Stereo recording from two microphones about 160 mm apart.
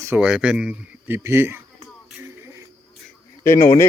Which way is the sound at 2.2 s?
15° right (ahead or behind).